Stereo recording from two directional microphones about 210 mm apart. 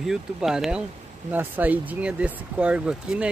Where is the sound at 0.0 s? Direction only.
Centre (ahead or behind).